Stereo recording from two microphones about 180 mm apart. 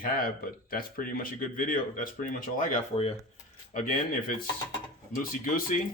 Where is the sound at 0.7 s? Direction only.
55° left (ahead or behind); by 3.1 s 35° left (ahead or behind).